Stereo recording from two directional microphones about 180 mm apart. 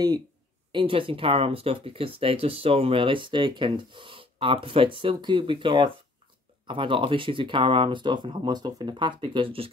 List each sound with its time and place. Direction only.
0.7 s speech: 30° right (ahead or behind)